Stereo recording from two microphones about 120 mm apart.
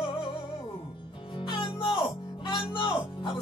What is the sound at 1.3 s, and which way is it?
Music, 45° left (ahead or behind).